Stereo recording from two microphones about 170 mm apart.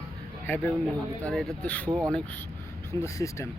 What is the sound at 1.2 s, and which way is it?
Speech, 5° left (ahead or behind).